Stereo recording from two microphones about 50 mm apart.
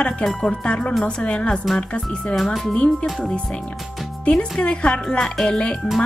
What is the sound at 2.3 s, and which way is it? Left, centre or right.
A woman's voice, centre.